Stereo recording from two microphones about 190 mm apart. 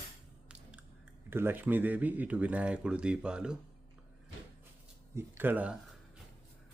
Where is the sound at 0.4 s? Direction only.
5° right (ahead or behind).